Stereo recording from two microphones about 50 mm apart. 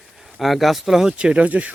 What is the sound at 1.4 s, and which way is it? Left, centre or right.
Speech, right.